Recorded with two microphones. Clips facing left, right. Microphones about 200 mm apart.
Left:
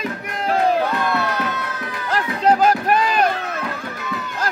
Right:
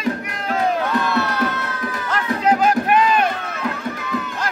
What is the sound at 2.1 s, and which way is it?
Run, 35° left (ahead or behind).